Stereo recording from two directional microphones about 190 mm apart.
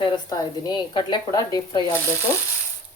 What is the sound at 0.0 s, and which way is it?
A woman's voice, 20° left (ahead or behind).